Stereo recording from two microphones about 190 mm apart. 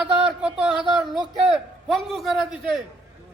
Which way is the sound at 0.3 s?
5° right (ahead or behind).